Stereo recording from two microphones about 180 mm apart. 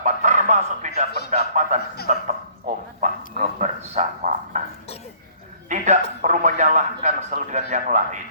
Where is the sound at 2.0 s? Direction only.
45° right (ahead or behind).